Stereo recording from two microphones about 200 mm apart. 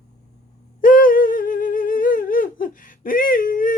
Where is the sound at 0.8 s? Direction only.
45° left (ahead or behind).